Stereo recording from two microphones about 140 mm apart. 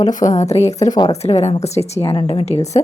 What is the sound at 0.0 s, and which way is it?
A woman's voice, 60° left (ahead or behind).